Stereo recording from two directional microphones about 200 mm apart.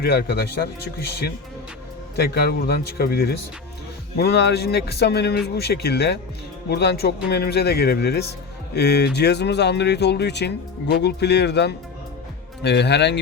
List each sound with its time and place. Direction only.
0.0 s speech: 55° left (ahead or behind)